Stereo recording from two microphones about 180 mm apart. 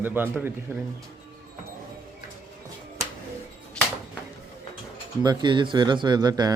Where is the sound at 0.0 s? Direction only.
10° right (ahead or behind).